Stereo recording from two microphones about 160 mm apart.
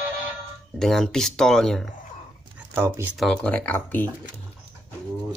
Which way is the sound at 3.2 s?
5° left (ahead or behind).